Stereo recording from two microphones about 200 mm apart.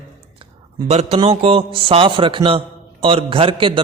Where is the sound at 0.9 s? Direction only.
30° right (ahead or behind).